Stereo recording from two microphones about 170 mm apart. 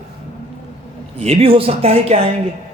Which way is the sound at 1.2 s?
35° right (ahead or behind).